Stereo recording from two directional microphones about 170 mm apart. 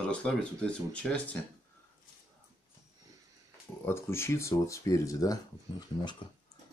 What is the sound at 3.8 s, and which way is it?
Speech, 15° left (ahead or behind).